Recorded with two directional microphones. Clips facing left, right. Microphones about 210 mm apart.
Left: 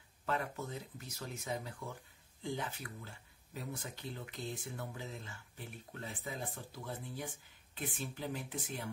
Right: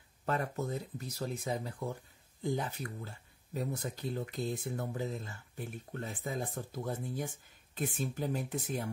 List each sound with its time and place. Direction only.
0.2 s speech: 40° right (ahead or behind)